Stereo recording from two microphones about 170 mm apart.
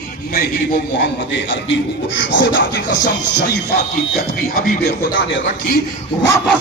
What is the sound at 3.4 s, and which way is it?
Speech, 70° left (ahead or behind).